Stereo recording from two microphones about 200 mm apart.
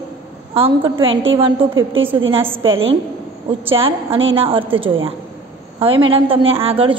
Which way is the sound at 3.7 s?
30° right (ahead or behind).